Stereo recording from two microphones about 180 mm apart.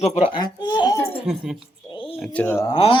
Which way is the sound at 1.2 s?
5° right (ahead or behind).